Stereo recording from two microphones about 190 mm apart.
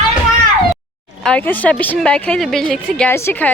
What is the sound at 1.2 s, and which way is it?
A woman's voice, 10° left (ahead or behind).